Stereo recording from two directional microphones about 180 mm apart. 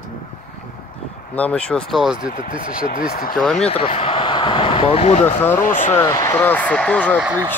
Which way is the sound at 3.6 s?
35° left (ahead or behind).